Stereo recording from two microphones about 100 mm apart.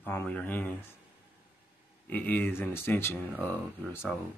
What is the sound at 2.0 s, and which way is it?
Speech, 15° left (ahead or behind).